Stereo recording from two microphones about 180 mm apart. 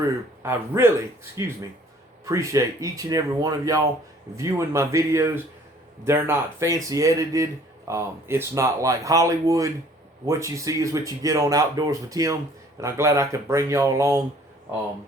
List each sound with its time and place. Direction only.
0.4 s speech: 15° right (ahead or behind)